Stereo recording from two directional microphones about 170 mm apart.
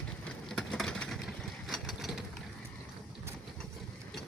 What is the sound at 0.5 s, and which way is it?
Vehicle, 5° left (ahead or behind).